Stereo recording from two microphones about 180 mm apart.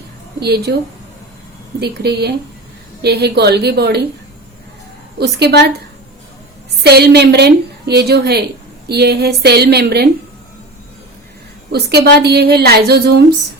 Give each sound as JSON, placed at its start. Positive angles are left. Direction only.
{"t": 0.3, "sound": "a woman's voice", "side_deg": -65}
{"t": 1.8, "sound": "a woman's voice", "side_deg": -65}
{"t": 5.1, "sound": "a woman's voice", "side_deg": -65}
{"t": 6.8, "sound": "a woman's voice", "side_deg": -65}
{"t": 11.7, "sound": "a woman's voice", "side_deg": -65}